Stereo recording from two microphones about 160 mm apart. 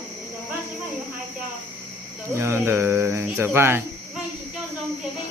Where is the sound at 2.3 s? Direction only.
15° right (ahead or behind).